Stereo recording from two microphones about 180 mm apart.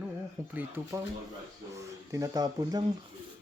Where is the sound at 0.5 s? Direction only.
10° right (ahead or behind).